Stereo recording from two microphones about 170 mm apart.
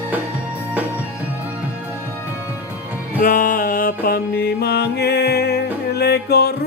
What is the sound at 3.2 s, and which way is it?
Mantra, 55° left (ahead or behind).